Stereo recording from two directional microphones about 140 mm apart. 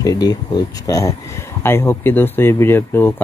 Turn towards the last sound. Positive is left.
turn(degrees=15)  # may be behind; listen again after turning